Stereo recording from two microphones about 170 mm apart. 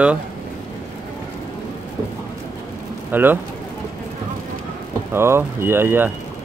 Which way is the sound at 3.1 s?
10° right (ahead or behind).